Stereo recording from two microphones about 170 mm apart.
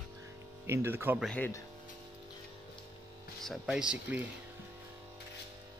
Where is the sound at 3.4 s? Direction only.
5° right (ahead or behind).